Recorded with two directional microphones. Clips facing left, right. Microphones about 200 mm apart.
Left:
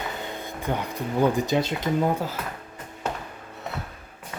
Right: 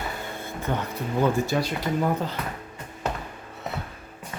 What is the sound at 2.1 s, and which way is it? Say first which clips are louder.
Speech: even; 5° left (ahead or behind).